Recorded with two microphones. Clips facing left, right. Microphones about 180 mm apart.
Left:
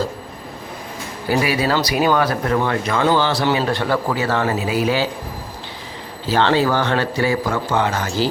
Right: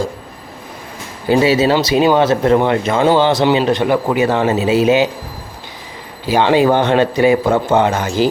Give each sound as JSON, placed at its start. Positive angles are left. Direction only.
{"t": 1.3, "sound": "speech", "side_deg": -25}
{"t": 6.2, "sound": "speech", "side_deg": -15}